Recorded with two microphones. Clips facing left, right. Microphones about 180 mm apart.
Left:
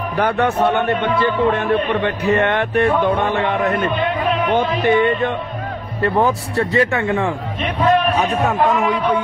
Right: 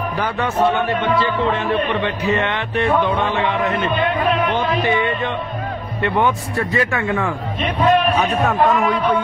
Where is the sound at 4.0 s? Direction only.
60° right (ahead or behind).